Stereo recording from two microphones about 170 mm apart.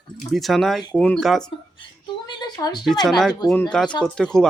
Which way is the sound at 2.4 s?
25° left (ahead or behind).